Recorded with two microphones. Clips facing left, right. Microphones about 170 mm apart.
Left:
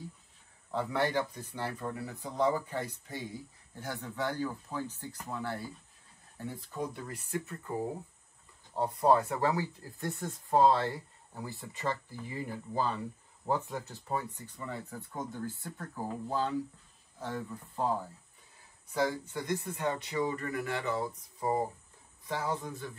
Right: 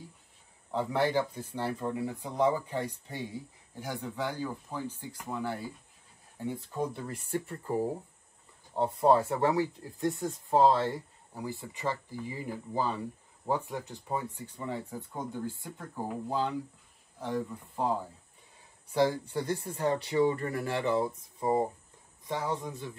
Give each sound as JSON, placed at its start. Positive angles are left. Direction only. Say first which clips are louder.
{"t": 0.7, "sound": "speech", "louder": "right 2 dB", "side_deg": -15}
{"t": 9.1, "sound": "speech", "louder": "right 1 dB", "side_deg": -20}
{"t": 18.9, "sound": "speech", "louder": "right 4 dB", "side_deg": -30}